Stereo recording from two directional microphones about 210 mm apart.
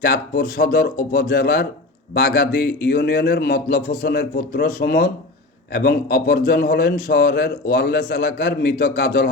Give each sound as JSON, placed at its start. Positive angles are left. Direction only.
{"t": 0.0, "sound": "a man's voice", "side_deg": 45}